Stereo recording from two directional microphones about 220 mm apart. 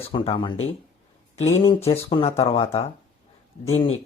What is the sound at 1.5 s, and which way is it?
Speech, 25° left (ahead or behind).